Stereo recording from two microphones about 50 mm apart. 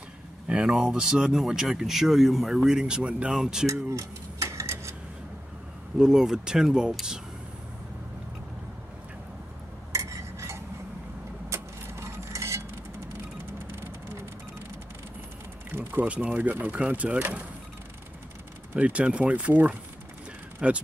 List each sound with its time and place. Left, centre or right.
0.5 s speech: centre
3.3 s speech: centre
3.6 s cutlery: right
5.9 s speech: centre
9.9 s cutlery: right
11.4 s a sound: right
15.7 s a sound: right
16.1 s speech: right
18.8 s speech: right